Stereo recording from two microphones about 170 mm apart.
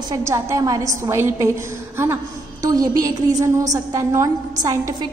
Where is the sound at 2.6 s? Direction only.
20° right (ahead or behind).